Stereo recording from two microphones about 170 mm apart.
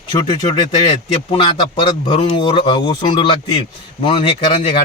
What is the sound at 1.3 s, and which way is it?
A man's voice, 30° left (ahead or behind).